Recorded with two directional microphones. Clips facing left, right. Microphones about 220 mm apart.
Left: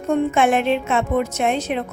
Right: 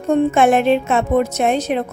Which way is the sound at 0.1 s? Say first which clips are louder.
Right 4 dB; 40° right (ahead or behind).